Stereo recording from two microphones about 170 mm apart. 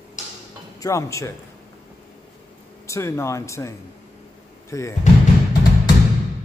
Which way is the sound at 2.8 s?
15° left (ahead or behind).